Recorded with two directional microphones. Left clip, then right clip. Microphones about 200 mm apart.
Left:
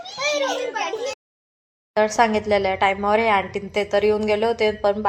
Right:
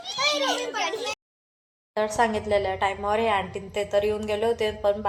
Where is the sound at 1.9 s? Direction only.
40° left (ahead or behind).